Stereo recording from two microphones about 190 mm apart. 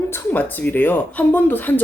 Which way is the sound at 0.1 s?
10° left (ahead or behind).